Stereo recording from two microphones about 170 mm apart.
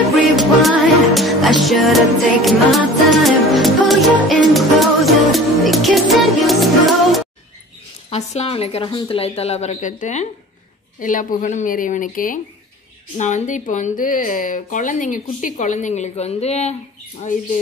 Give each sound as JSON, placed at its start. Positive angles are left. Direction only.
{"t": 0.1, "sound": "music", "side_deg": 0}
{"t": 8.1, "sound": "speech", "side_deg": 40}